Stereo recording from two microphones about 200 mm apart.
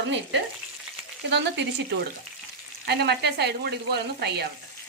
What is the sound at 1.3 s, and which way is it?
A woman's voice, 60° right (ahead or behind).